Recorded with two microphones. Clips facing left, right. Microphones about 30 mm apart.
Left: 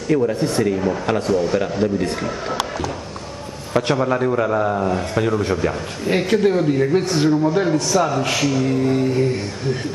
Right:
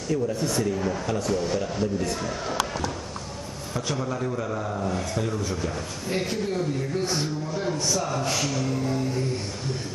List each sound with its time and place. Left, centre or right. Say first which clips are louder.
0.1 s speech: left 8 dB; left
1.3 s a man's voice: left 8 dB; left
1.6 s a man's voice: left 7 dB; left
3.7 s a man's voice: left 11 dB; left
6.0 s a man's voice: left 11 dB; left
6.7 s a man's voice: left 10 dB; left
8.6 s speech: left 9 dB; left